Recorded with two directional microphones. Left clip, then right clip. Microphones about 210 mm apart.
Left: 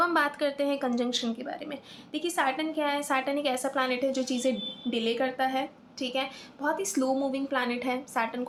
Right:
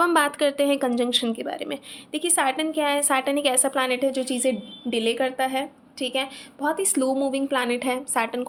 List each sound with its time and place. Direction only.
0.0 s a woman's voice: 45° right (ahead or behind)